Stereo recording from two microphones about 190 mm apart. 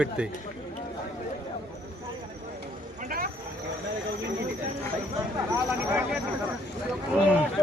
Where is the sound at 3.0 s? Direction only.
50° right (ahead or behind).